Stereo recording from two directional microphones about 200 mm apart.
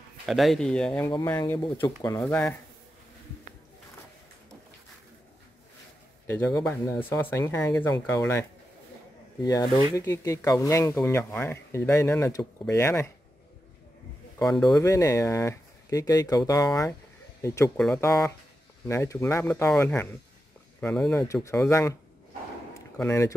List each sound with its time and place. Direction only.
0.3 s speech: centre (ahead or behind)
1.4 s speech: 15° left (ahead or behind)
2.2 s speech: 5° left (ahead or behind)
6.2 s a man's voice: 15° left (ahead or behind)
14.6 s speech: 15° left (ahead or behind)
23.0 s speech: 15° left (ahead or behind)